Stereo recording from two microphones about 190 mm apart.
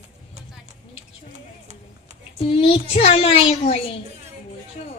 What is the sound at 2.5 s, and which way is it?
A child's voice, 30° left (ahead or behind).